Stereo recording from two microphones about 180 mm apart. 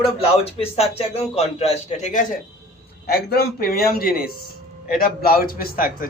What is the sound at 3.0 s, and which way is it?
A man's voice, 60° left (ahead or behind).